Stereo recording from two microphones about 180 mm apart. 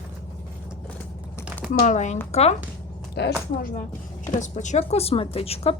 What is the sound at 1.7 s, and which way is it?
Speech, 45° left (ahead or behind).